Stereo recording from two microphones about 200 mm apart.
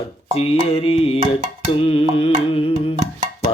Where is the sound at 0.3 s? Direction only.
30° left (ahead or behind).